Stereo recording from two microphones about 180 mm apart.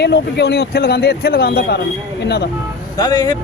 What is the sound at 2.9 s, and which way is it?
Speech, 20° left (ahead or behind).